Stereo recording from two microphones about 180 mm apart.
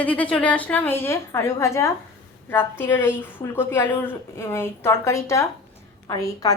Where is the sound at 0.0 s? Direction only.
5° left (ahead or behind).